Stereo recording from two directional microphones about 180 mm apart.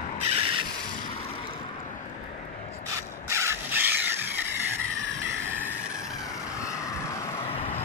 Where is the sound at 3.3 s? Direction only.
15° right (ahead or behind).